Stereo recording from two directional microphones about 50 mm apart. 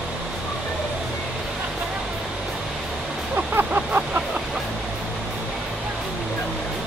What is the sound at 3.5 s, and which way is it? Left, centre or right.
Vehicle, right.